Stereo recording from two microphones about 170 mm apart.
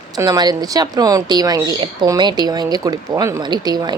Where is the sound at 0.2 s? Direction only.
20° right (ahead or behind).